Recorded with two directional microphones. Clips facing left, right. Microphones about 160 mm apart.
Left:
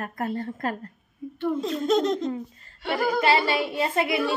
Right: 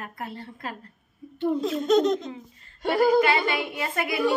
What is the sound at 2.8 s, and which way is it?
Speech, 45° right (ahead or behind).